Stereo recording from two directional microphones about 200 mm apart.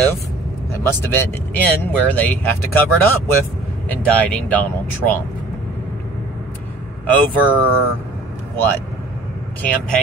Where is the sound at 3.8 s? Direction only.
5° left (ahead or behind).